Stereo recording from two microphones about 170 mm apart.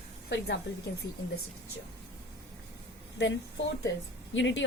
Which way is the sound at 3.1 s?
90° left.